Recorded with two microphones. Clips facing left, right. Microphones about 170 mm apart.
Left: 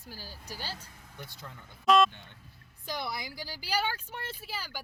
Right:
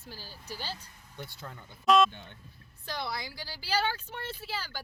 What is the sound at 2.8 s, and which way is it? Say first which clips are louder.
A woman's voice: even; 20° left (ahead or behind).